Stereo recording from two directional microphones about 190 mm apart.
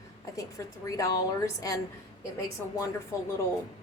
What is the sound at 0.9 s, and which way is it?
A woman's voice, 15° left (ahead or behind).